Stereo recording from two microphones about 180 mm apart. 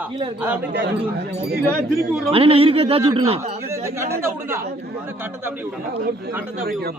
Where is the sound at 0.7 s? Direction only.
65° right (ahead or behind).